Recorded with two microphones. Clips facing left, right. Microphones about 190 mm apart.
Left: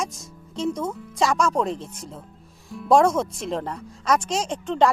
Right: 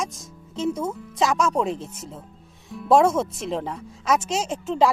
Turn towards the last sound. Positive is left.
turn(degrees=-5)  # may be behind; listen again after turning